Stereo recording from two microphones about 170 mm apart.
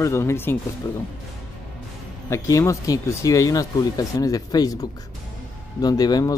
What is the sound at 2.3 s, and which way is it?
Speech, 15° left (ahead or behind).